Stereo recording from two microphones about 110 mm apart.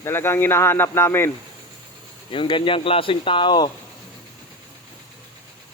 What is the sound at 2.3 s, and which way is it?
Speech, 50° left (ahead or behind).